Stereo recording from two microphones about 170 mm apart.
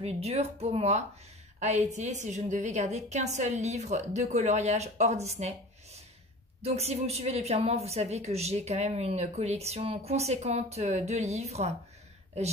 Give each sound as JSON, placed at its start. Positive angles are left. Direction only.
{"t": 0.0, "sound": "a woman's voice", "side_deg": -35}